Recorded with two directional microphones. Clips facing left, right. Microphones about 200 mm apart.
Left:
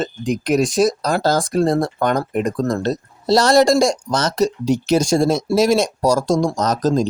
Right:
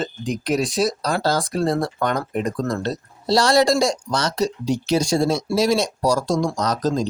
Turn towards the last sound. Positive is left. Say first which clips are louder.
# left 4 dB
turn(degrees=45)  # may be behind; listen again after turning